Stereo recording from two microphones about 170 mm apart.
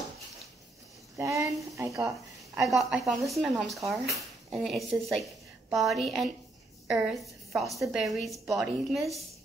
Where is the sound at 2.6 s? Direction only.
Centre (ahead or behind).